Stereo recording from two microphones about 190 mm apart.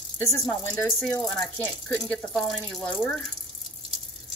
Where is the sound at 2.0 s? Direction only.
5° left (ahead or behind).